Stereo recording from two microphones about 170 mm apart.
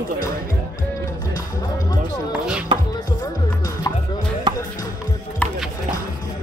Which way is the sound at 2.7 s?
30° right (ahead or behind).